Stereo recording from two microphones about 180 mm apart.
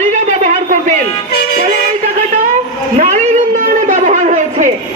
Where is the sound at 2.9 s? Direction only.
40° right (ahead or behind).